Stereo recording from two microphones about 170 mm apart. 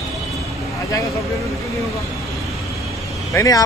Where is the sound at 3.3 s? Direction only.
20° left (ahead or behind).